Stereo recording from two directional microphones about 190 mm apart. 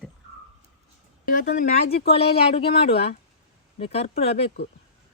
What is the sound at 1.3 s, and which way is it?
Speech, 45° left (ahead or behind).